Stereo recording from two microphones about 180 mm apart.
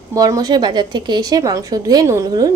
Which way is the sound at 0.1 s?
20° right (ahead or behind).